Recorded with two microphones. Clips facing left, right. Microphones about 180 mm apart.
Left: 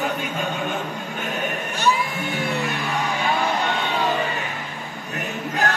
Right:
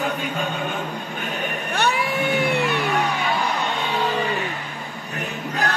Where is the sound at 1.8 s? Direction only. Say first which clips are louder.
Left 1 dB; 65° right (ahead or behind).